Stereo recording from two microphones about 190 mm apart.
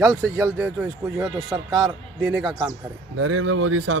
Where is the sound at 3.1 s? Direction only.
90° right.